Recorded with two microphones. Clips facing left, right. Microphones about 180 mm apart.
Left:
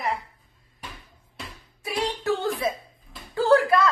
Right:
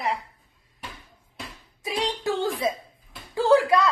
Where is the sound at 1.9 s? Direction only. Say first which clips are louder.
Left 1 dB; 15° right (ahead or behind).